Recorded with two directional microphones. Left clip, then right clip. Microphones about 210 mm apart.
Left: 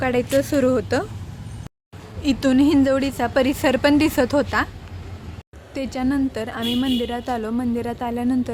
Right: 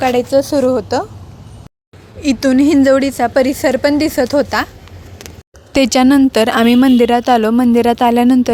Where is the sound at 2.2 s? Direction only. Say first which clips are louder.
Right 6 dB; 30° right (ahead or behind).